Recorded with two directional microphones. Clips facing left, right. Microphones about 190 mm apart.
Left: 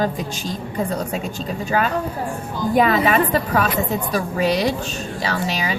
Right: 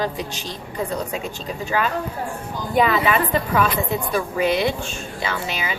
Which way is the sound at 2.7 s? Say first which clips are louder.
Left 2 dB; 40° left (ahead or behind).